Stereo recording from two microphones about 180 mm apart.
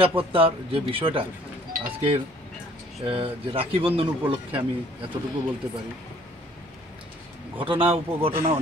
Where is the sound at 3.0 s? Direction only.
30° right (ahead or behind).